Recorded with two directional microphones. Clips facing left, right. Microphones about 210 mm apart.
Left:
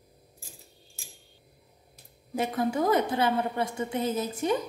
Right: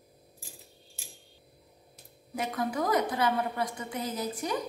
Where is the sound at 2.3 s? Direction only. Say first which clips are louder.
Left 4 dB; 30° left (ahead or behind).